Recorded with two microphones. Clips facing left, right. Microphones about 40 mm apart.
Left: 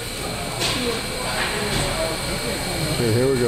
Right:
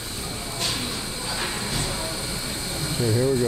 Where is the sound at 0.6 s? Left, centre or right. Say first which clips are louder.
Left 5 dB; left.